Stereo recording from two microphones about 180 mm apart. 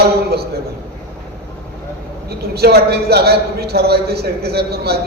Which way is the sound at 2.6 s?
65° right (ahead or behind).